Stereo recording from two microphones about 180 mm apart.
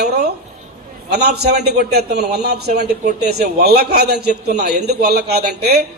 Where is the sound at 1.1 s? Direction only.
65° right (ahead or behind).